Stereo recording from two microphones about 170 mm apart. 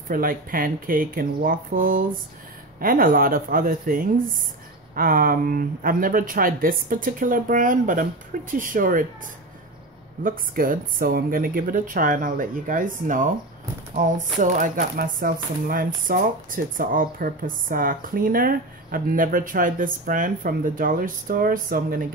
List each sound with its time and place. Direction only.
0.1 s speech: 55° right (ahead or behind)
10.2 s speech: 55° right (ahead or behind)